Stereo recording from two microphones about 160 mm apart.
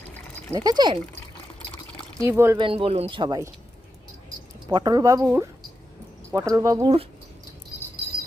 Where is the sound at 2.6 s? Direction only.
35° right (ahead or behind).